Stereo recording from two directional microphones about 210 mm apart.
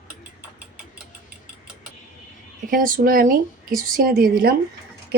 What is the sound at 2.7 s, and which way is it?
Speech, 40° right (ahead or behind).